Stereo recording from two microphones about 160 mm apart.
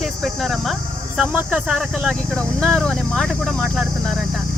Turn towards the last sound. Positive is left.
turn(degrees=0)  # may be behind; listen again after turning